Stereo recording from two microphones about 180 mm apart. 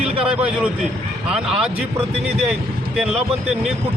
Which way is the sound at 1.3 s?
5° right (ahead or behind).